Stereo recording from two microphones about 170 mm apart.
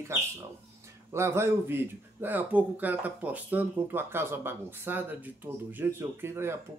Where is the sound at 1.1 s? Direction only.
15° right (ahead or behind).